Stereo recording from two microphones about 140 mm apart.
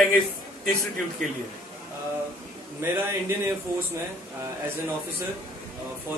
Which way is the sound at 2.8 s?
15° right (ahead or behind).